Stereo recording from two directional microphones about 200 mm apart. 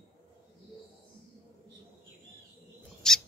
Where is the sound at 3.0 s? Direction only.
Centre (ahead or behind).